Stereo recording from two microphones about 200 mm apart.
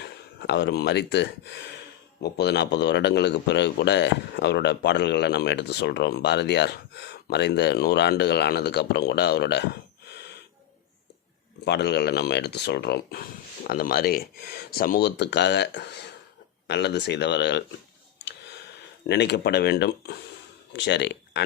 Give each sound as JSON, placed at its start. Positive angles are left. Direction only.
{"t": 0.0, "sound": "a man's voice", "side_deg": 60}
{"t": 11.6, "sound": "a man's voice", "side_deg": 55}
{"t": 19.0, "sound": "a man's voice", "side_deg": 55}